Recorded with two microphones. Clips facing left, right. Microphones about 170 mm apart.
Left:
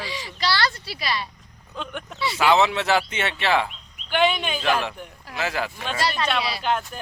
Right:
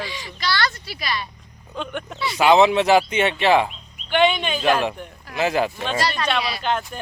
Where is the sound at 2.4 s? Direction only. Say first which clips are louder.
Right 5 dB; 20° right (ahead or behind).